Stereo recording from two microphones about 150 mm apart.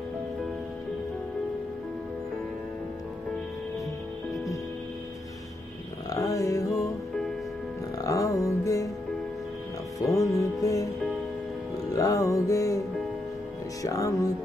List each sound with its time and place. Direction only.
6.0 s music: 20° left (ahead or behind)
8.0 s music: 20° left (ahead or behind)
9.9 s music: 20° left (ahead or behind)
11.9 s music: 20° left (ahead or behind)
13.8 s music: 20° left (ahead or behind)